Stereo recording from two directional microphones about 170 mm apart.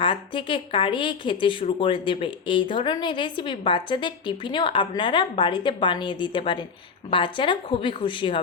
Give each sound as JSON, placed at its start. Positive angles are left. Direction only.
{"t": 0.0, "sound": "a woman's voice", "side_deg": 30}